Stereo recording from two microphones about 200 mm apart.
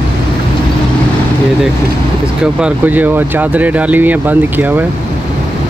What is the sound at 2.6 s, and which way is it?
Speech, 10° right (ahead or behind).